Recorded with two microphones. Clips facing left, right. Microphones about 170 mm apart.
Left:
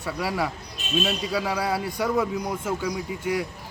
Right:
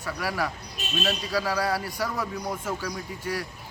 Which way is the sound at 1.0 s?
Centre (ahead or behind).